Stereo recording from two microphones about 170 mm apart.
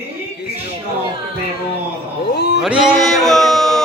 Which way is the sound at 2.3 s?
80° left.